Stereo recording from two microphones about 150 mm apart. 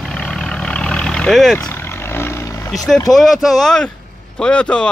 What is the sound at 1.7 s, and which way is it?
Vehicle, 15° left (ahead or behind).